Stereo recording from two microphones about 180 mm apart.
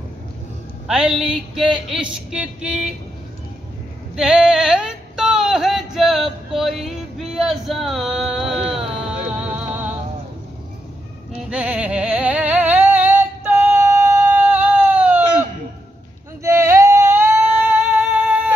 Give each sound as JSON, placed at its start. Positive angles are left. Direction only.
{"t": 0.8, "sound": "speech", "side_deg": -5}
{"t": 4.2, "sound": "a sound", "side_deg": -5}
{"t": 8.6, "sound": "a sound", "side_deg": -35}
{"t": 9.6, "sound": "music", "side_deg": -10}
{"t": 11.3, "sound": "music", "side_deg": -5}
{"t": 16.4, "sound": "singing", "side_deg": -15}